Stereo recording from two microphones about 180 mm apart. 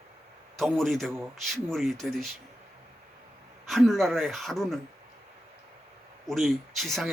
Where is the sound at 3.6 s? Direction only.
Centre (ahead or behind).